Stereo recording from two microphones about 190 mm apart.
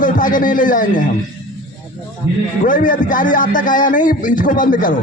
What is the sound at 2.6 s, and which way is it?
A man's voice, 45° left (ahead or behind).